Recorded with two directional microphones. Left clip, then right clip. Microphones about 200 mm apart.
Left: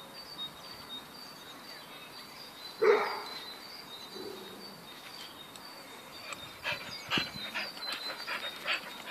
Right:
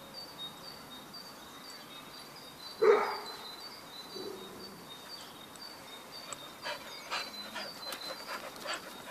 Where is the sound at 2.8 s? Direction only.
Centre (ahead or behind).